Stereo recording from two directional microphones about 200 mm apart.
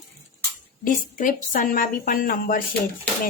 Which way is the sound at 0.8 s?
40° left (ahead or behind).